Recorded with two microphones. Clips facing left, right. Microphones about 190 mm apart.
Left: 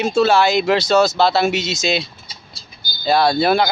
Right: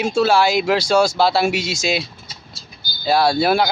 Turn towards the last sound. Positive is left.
turn(degrees=-5)  # may be behind; listen again after turning